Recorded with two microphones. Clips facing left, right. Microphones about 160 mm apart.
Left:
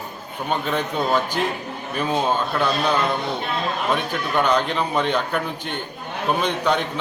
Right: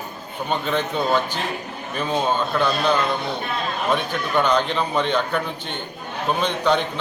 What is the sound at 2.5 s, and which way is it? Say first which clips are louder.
Speech: right 3 dB; centre (ahead or behind).